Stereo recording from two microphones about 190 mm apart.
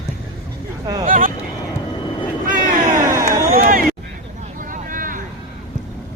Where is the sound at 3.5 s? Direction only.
45° right (ahead or behind).